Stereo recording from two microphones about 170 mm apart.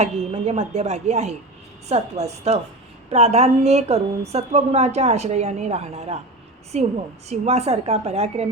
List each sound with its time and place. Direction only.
0.0 s a woman's voice: 40° right (ahead or behind)